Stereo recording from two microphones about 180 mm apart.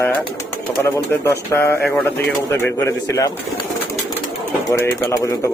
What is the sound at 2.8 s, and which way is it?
Speech, 15° left (ahead or behind).